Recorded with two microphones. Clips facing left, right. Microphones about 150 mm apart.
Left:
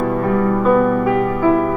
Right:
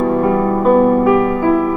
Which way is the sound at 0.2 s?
25° right (ahead or behind).